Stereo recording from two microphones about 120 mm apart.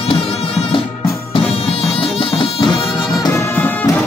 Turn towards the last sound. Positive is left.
turn(degrees=20)  # may be behind; listen again after turning